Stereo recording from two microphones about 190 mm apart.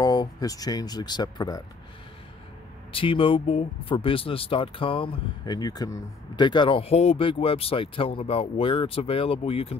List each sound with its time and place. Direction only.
0.0 s speech: 20° left (ahead or behind)
2.9 s speech: 30° left (ahead or behind)